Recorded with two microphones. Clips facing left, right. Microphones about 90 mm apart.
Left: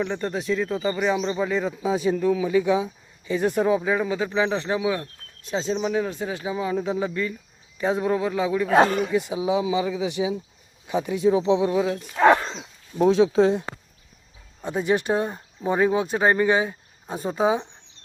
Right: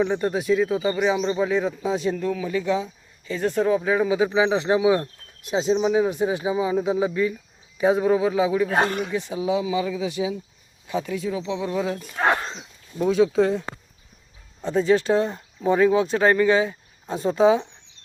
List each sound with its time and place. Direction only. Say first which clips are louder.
0.0 s speech: right 4 dB; 10° right (ahead or behind)
9.1 s speech: left 1 dB; 10° left (ahead or behind); by 11.6 s 30° left (ahead or behind)
11.6 s speech: left 4 dB; 15° left (ahead or behind)
13.3 s speech: left 1 dB; 25° left (ahead or behind)
14.6 s speech: right 3 dB; 10° left (ahead or behind)